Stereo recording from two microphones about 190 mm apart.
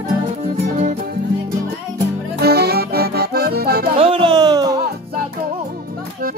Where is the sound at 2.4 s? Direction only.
55° right (ahead or behind).